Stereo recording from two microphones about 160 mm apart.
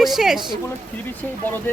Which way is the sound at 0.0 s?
Centre (ahead or behind).